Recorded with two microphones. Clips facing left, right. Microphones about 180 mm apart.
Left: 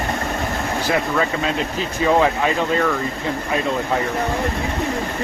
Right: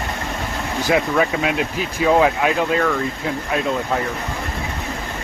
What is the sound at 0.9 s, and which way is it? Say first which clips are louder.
Speech: right 3 dB; 10° right (ahead or behind).